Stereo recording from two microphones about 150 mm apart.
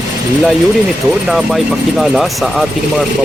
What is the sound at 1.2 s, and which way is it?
Speech, centre (ahead or behind).